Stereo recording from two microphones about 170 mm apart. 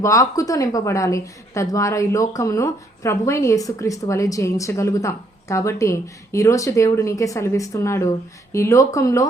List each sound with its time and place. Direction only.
0.0 s a woman's voice: 20° left (ahead or behind)